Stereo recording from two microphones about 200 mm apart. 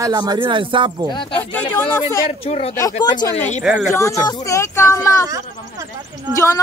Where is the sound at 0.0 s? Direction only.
20° right (ahead or behind).